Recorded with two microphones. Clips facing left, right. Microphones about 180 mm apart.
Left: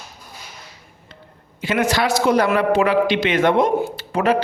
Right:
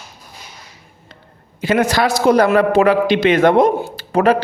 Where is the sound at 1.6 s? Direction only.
40° right (ahead or behind).